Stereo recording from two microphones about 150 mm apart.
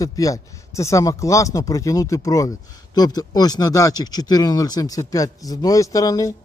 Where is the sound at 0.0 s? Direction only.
20° left (ahead or behind).